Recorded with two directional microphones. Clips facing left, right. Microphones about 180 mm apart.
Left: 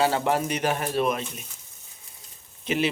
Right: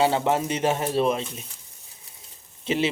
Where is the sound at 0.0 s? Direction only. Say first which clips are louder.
Right 1 dB; 25° right (ahead or behind).